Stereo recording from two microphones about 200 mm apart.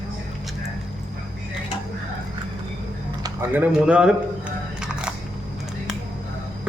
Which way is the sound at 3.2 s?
10° right (ahead or behind).